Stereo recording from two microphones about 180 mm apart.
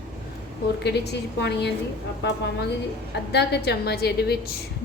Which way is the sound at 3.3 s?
70° left (ahead or behind).